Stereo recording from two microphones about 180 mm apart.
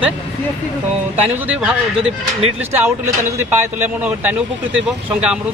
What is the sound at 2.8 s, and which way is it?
Speech, 15° right (ahead or behind).